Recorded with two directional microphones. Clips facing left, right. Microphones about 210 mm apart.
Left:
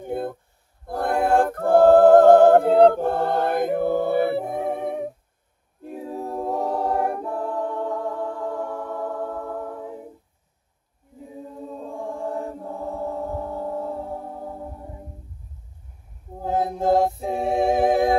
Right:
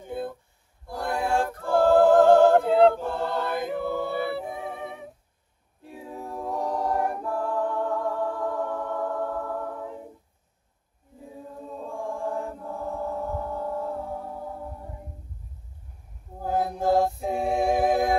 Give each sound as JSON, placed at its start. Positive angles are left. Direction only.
{"t": 0.0, "sound": "a sound", "side_deg": 50}
{"t": 0.8, "sound": "a capella", "side_deg": 55}
{"t": 12.3, "sound": "chant", "side_deg": 20}
{"t": 16.4, "sound": "a capella", "side_deg": 25}